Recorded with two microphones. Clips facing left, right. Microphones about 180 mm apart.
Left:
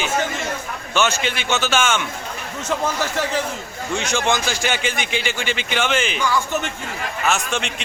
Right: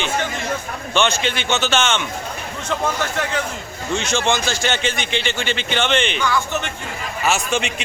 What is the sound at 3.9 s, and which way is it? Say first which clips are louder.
A man's voice: right 1 dB; 10° left (ahead or behind).